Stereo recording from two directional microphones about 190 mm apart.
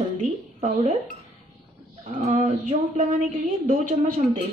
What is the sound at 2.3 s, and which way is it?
Speech, 35° right (ahead or behind).